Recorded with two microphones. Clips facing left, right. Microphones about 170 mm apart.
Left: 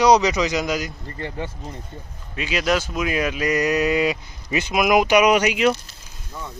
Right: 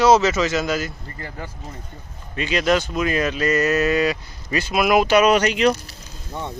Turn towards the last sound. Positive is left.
turn(degrees=-25)  # may be behind; listen again after turning